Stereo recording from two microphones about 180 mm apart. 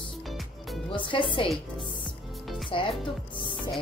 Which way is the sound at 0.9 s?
30° left (ahead or behind).